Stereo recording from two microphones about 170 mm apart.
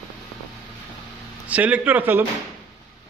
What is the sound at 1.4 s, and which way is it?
Speech, 10° right (ahead or behind).